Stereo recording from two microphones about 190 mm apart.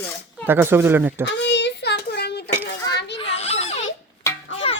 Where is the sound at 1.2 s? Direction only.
70° left (ahead or behind).